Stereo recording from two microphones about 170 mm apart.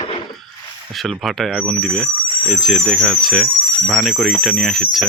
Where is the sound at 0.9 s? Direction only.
Centre (ahead or behind).